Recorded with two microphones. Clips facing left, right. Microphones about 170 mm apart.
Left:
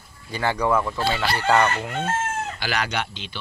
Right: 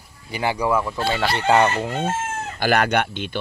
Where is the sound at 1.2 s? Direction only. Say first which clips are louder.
Right 3 dB; 25° right (ahead or behind).